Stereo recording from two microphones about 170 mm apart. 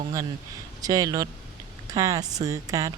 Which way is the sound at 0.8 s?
20° right (ahead or behind).